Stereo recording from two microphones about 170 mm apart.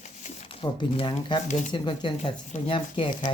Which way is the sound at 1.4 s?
45° left (ahead or behind).